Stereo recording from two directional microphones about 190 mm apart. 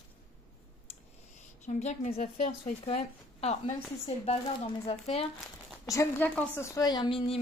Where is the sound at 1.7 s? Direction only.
35° left (ahead or behind).